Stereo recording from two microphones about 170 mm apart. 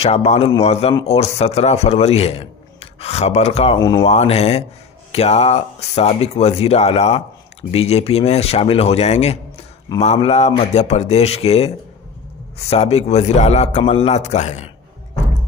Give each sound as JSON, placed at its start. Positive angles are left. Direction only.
{"t": 0.0, "sound": "a man's voice", "side_deg": 35}
{"t": 3.7, "sound": "speech", "side_deg": 25}
{"t": 4.0, "sound": "a man's voice", "side_deg": 35}